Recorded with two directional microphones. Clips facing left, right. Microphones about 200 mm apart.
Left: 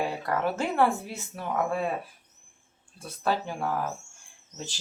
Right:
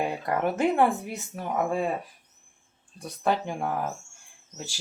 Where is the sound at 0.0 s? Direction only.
20° right (ahead or behind).